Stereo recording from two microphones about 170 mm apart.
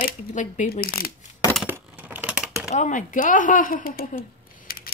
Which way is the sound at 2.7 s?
45° left (ahead or behind).